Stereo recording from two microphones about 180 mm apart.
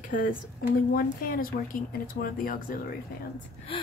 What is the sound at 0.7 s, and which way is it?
Speech, 50° left (ahead or behind).